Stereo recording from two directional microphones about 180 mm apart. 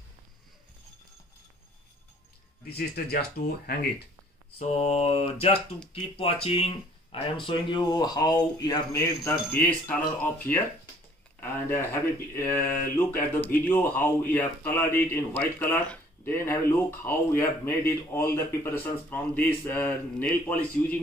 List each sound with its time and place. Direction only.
3.1 s speech: 60° left (ahead or behind)
4.6 s mantra: 35° left (ahead or behind)
6.1 s speech: 30° left (ahead or behind); by 10.6 s 10° left (ahead or behind)
12.4 s speech: 10° left (ahead or behind)